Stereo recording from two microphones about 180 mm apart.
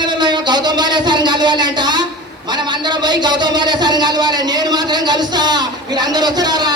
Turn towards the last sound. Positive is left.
turn(degrees=-25)  # may be behind; listen again after turning